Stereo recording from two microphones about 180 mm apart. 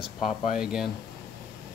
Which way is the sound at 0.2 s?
45° left (ahead or behind).